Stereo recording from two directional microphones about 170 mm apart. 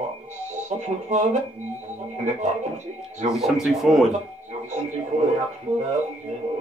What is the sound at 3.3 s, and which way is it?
Speech, centre (ahead or behind).